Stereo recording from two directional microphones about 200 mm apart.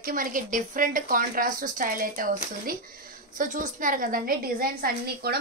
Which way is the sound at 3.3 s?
40° right (ahead or behind).